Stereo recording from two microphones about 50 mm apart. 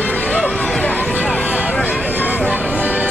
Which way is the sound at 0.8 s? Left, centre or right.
Centre.